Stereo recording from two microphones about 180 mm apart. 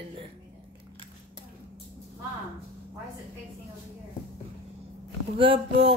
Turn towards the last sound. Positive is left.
turn(degrees=-30)  # may be behind; listen again after turning